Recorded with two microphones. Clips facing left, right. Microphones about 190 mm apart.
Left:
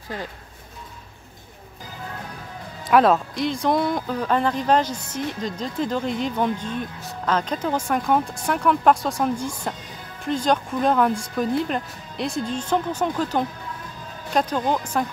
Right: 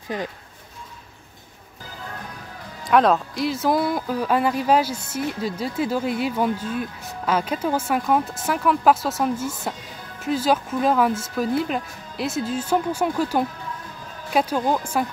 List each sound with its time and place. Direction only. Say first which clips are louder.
0.1 s speech: right 4 dB; 15° right (ahead or behind)
2.8 s speech: left 1 dB; centre (ahead or behind)